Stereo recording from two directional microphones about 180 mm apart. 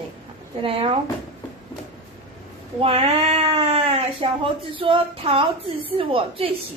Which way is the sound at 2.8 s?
30° right (ahead or behind).